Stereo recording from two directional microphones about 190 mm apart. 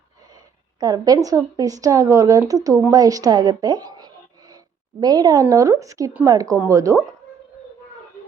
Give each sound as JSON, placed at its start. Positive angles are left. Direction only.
{"t": 0.8, "sound": "speech", "side_deg": -20}